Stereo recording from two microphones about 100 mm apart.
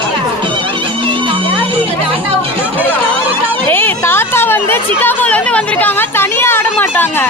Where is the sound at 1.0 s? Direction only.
60° right (ahead or behind).